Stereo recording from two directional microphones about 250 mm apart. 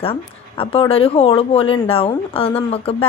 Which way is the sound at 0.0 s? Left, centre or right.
Left.